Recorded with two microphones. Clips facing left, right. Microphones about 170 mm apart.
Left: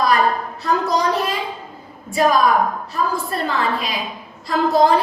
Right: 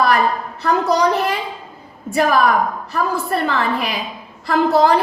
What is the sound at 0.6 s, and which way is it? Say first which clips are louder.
A woman's voice: right 3 dB; 70° right (ahead or behind).